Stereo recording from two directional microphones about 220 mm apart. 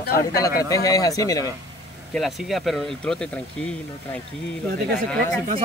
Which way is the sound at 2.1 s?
Centre (ahead or behind).